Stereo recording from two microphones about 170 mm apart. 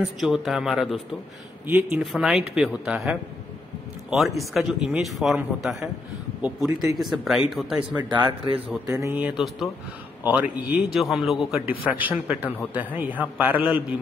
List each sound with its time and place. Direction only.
0.2 s a man's voice: centre (ahead or behind)
8.1 s a man's voice: 25° right (ahead or behind); by 13.9 s 10° right (ahead or behind)